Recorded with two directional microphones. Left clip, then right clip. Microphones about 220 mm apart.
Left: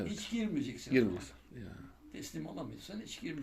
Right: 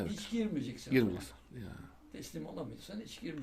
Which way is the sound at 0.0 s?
15° right (ahead or behind).